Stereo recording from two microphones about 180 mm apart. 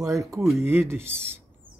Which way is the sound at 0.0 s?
15° right (ahead or behind).